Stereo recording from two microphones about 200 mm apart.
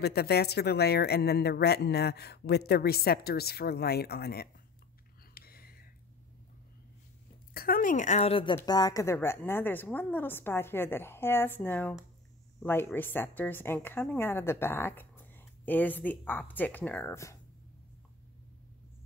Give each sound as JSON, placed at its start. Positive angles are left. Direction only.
{"t": 0.0, "sound": "speech", "side_deg": 50}
{"t": 5.3, "sound": "a sound", "side_deg": 50}
{"t": 7.5, "sound": "a woman's voice", "side_deg": 45}